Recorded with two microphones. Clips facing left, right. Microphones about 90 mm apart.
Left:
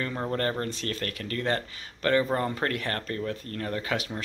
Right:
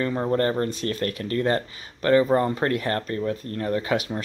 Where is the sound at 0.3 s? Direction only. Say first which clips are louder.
Right 6 dB; 25° right (ahead or behind).